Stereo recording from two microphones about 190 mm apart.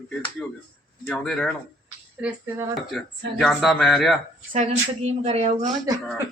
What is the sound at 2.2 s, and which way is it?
A man's voice, 10° right (ahead or behind).